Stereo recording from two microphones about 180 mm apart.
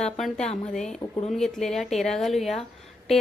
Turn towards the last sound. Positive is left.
turn(degrees=0)  # may be behind; listen again after turning